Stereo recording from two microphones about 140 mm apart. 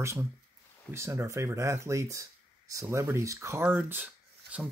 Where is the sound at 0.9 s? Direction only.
20° right (ahead or behind).